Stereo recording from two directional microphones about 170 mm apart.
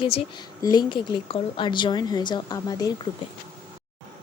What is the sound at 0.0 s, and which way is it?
Speech, 35° left (ahead or behind).